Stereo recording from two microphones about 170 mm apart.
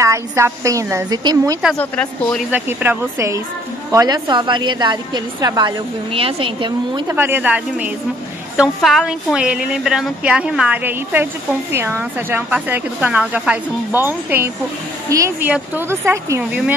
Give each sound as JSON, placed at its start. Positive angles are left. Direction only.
{"t": 0.0, "sound": "a woman's voice", "side_deg": -20}
{"t": 1.8, "sound": "a woman's voice", "side_deg": 5}
{"t": 2.5, "sound": "a woman's voice", "side_deg": -10}
{"t": 7.1, "sound": "a woman's voice", "side_deg": -15}